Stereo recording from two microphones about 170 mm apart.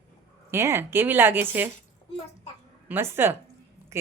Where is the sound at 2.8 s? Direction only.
15° right (ahead or behind).